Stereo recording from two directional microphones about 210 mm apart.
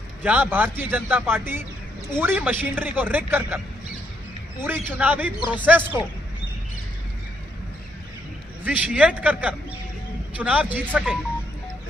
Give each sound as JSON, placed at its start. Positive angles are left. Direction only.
{"t": 0.2, "sound": "a man's voice", "side_deg": -10}
{"t": 4.6, "sound": "a man's voice", "side_deg": -10}
{"t": 5.4, "sound": "speech", "side_deg": 20}
{"t": 5.7, "sound": "a man's voice", "side_deg": -10}
{"t": 8.6, "sound": "a man's voice", "side_deg": -5}